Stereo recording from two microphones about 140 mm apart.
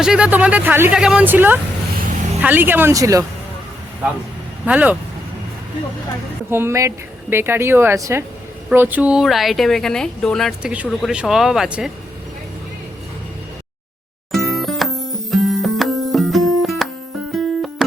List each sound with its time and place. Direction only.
0.0 s speech: 5° right (ahead or behind); by 3.2 s 25° right (ahead or behind)
4.6 s speech: 10° right (ahead or behind)
6.5 s speech: 15° right (ahead or behind); by 10.5 s 5° left (ahead or behind)
10.6 s speech: 5° right (ahead or behind)
14.3 s music: centre (ahead or behind)